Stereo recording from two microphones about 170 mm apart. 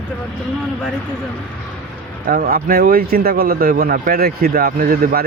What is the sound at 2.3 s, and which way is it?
Speech, 60° right (ahead or behind).